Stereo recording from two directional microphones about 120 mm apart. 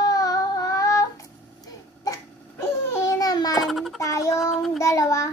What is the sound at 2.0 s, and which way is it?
Babbling, 25° left (ahead or behind).